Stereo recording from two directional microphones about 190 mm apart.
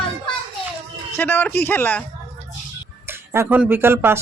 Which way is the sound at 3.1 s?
15° right (ahead or behind).